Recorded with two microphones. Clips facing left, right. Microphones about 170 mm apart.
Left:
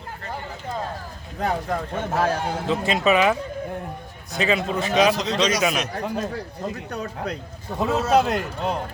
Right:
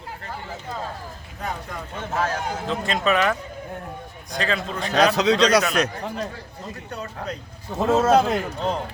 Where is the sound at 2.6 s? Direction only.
5° left (ahead or behind).